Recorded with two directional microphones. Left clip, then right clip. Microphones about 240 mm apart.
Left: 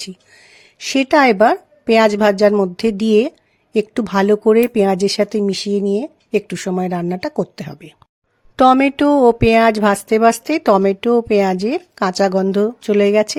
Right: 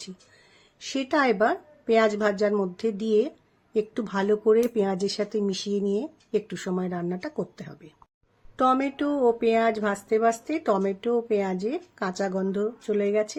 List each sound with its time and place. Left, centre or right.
0.5 s a woman's voice: left